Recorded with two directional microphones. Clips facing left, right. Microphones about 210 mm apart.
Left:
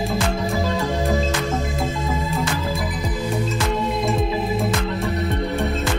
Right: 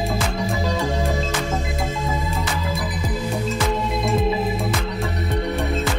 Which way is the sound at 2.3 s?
Centre (ahead or behind).